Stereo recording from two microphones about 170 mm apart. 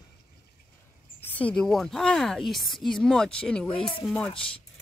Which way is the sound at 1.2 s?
10° left (ahead or behind).